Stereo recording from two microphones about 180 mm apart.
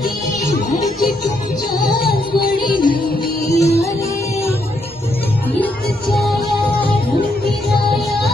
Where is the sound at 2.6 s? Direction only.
25° left (ahead or behind).